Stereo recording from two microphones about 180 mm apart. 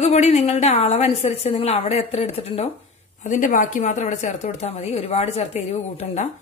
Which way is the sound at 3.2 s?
45° left (ahead or behind).